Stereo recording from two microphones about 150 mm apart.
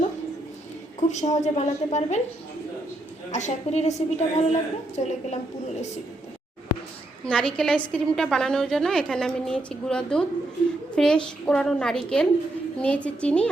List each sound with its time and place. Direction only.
0.9 s a woman's voice: 50° left (ahead or behind)
3.3 s a woman's voice: 50° left (ahead or behind)
7.3 s a woman's voice: 5° left (ahead or behind)